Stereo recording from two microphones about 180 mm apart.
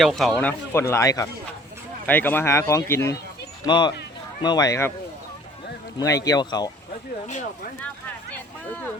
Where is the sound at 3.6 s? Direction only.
25° left (ahead or behind).